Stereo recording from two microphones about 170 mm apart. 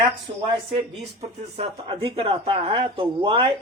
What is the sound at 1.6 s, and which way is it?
A man's voice, 30° right (ahead or behind).